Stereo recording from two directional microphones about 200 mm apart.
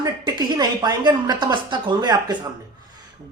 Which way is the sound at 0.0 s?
20° right (ahead or behind).